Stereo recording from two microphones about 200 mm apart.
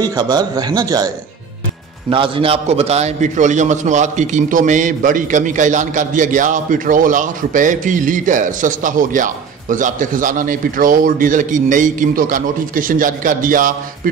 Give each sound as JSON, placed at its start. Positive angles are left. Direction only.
{"t": 0.0, "sound": "a man's voice", "side_deg": -20}